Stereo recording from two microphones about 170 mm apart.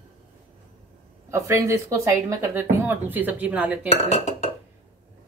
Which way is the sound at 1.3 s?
15° right (ahead or behind).